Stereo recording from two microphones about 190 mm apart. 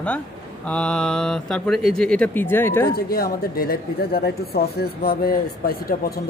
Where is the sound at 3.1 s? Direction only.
50° left (ahead or behind).